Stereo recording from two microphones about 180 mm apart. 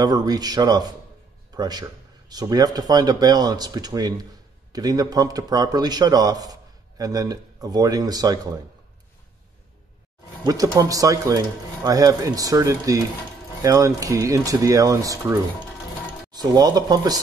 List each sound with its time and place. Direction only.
0.0 s speech: 20° right (ahead or behind)
10.4 s speech: 20° right (ahead or behind)